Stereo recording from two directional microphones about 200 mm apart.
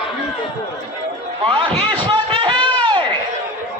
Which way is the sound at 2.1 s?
25° right (ahead or behind).